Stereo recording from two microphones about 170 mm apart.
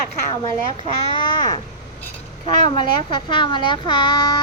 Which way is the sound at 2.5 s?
50° right (ahead or behind).